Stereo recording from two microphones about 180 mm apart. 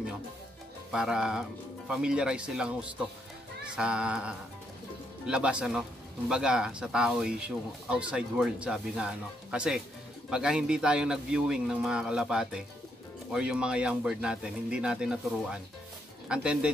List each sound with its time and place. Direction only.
0.9 s speech: 5° right (ahead or behind)